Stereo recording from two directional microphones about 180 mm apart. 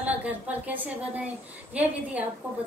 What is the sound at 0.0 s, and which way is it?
A woman's voice, 10° right (ahead or behind).